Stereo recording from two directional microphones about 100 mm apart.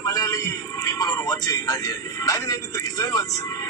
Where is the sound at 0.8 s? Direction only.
40° left (ahead or behind).